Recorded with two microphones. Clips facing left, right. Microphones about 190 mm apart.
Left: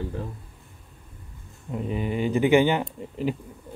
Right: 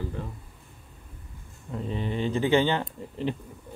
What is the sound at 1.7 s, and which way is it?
Speech, 10° left (ahead or behind).